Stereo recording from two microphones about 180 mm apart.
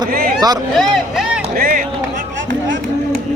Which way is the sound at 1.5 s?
55° right (ahead or behind).